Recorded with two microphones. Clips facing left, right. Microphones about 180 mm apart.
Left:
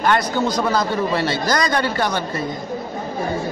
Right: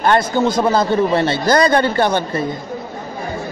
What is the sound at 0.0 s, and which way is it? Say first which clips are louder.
A man's voice: right 4 dB; 25° right (ahead or behind).